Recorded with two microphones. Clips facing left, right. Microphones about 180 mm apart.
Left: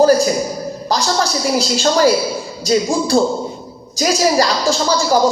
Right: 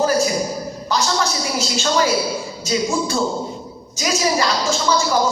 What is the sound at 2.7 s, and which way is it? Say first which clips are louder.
Speech: left 5 dB; 35° left (ahead or behind).